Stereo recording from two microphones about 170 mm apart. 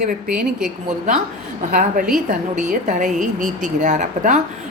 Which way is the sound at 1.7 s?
55° right (ahead or behind).